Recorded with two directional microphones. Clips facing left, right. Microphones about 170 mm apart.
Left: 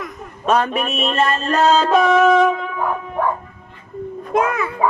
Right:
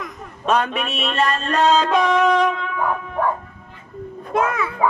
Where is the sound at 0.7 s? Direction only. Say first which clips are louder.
Left 3 dB; 45° left (ahead or behind).